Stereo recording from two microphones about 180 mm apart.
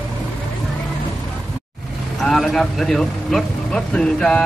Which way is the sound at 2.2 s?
Centre (ahead or behind).